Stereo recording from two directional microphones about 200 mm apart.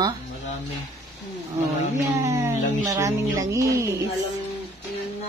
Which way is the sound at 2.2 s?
15° right (ahead or behind).